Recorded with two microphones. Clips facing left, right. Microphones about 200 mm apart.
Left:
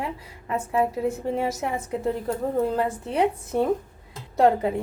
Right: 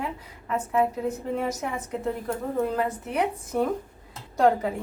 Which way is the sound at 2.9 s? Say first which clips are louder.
Left 3 dB; 30° left (ahead or behind).